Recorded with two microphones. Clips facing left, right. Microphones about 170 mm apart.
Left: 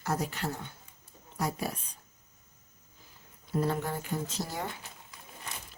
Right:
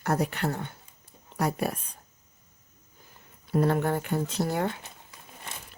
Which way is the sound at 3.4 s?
65° right (ahead or behind).